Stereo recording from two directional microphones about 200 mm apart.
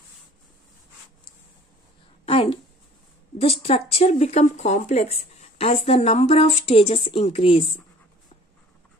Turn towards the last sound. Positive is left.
turn(degrees=25)  # may be behind; listen again after turning